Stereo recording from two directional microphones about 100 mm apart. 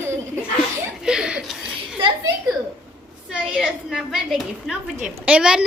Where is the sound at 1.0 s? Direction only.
5° right (ahead or behind).